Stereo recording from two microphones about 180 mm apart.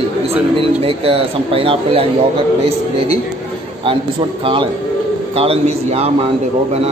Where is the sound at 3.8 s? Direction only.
30° right (ahead or behind).